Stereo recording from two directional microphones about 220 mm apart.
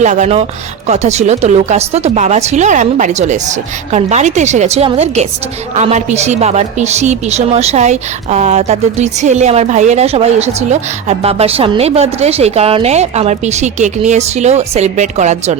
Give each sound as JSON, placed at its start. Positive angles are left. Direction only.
{"t": 0.0, "sound": "a woman's voice", "side_deg": -30}